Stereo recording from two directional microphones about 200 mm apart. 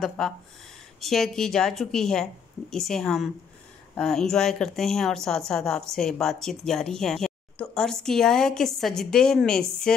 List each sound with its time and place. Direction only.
0.2 s speech: centre (ahead or behind)